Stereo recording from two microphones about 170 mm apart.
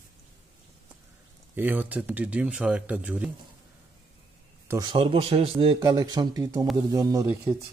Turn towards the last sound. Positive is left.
turn(degrees=-15)  # may be behind; listen again after turning